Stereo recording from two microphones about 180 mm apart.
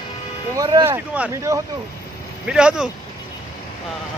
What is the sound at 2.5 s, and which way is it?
Speech, 5° right (ahead or behind).